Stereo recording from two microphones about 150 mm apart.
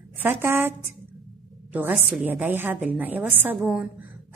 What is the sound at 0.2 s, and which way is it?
A woman's voice, 15° right (ahead or behind).